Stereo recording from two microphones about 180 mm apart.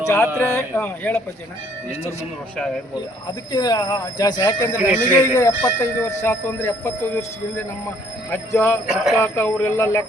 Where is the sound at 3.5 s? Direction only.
25° left (ahead or behind).